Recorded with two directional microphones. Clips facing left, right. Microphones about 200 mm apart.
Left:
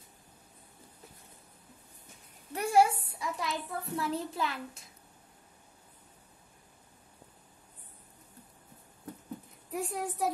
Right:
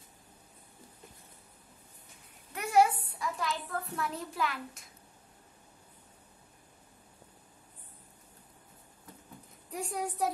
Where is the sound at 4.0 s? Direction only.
30° left (ahead or behind).